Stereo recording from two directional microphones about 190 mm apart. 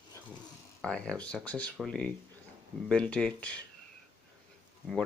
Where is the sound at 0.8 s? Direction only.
5° left (ahead or behind).